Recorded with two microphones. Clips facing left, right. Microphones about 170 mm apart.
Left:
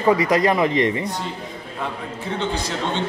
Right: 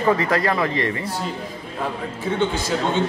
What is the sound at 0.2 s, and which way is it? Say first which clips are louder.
Speech: left 3 dB; 20° left (ahead or behind).